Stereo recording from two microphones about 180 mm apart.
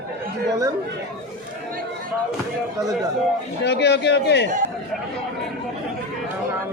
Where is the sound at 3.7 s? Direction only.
70° left (ahead or behind).